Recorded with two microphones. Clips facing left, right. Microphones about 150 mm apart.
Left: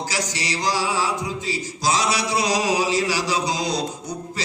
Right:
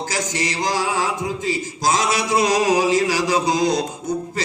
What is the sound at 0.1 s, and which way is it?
Mantra, 50° right (ahead or behind).